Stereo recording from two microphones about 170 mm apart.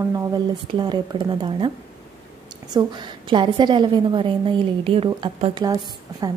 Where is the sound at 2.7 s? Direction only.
25° right (ahead or behind).